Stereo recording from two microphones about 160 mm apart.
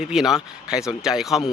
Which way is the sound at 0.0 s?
5° right (ahead or behind).